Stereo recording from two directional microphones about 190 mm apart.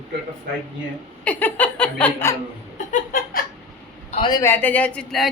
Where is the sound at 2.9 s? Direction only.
45° left (ahead or behind).